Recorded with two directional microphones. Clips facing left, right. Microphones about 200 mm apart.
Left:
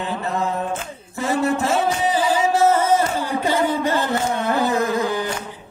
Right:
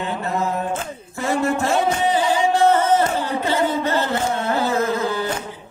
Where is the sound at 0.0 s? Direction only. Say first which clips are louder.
Even; centre (ahead or behind); by 5.2 s 15° left (ahead or behind).